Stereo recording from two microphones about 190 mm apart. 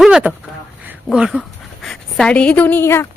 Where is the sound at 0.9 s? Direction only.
5° right (ahead or behind).